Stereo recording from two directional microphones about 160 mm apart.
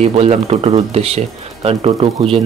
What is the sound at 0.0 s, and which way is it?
Speech, 40° right (ahead or behind).